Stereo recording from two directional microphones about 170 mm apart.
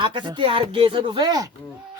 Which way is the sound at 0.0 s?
25° right (ahead or behind).